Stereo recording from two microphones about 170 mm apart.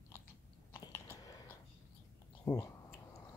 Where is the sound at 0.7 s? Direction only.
15° left (ahead or behind).